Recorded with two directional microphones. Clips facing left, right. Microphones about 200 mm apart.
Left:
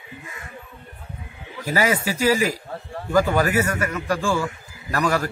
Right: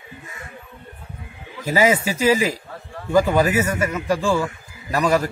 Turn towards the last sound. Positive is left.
turn(degrees=-20)  # may be behind; listen again after turning